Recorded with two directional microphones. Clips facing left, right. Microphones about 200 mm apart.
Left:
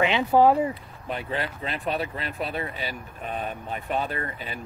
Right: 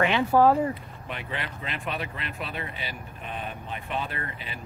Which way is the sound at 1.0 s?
35° left (ahead or behind).